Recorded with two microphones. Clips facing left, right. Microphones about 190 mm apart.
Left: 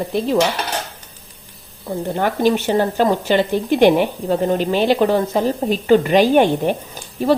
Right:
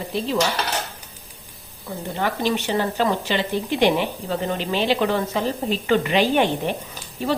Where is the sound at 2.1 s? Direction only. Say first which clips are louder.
Left 6 dB; 50° left (ahead or behind).